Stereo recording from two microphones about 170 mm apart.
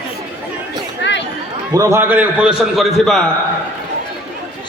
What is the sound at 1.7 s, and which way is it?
A man's voice, 15° right (ahead or behind).